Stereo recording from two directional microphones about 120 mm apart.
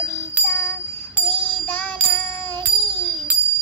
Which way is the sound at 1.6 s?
10° left (ahead or behind).